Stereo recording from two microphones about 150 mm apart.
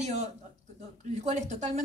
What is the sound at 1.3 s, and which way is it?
Speech, 50° right (ahead or behind).